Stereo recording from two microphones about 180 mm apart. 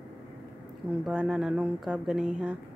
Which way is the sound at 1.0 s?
5° right (ahead or behind).